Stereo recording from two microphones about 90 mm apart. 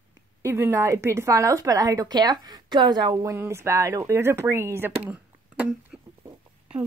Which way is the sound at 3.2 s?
30° right (ahead or behind).